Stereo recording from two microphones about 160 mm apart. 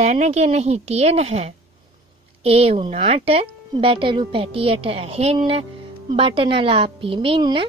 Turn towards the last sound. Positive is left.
turn(degrees=-35)  # may be behind; listen again after turning